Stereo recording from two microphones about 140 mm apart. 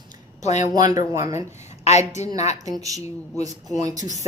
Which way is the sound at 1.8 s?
55° left (ahead or behind).